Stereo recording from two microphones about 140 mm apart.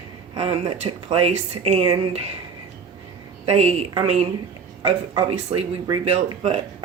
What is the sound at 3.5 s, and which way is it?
Speech, 50° right (ahead or behind).